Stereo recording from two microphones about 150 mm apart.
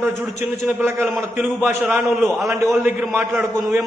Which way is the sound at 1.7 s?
15° right (ahead or behind).